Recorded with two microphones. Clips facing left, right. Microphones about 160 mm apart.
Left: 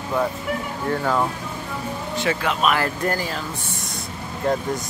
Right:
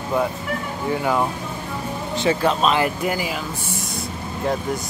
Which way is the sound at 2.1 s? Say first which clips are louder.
Right 4 dB; 30° right (ahead or behind).